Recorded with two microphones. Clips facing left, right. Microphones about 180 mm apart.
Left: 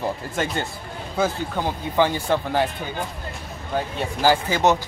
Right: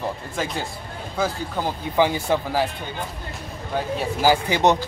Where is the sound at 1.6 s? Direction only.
10° right (ahead or behind).